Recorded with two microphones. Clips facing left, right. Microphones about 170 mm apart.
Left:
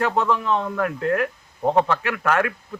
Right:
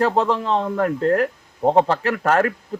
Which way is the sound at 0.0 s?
30° right (ahead or behind).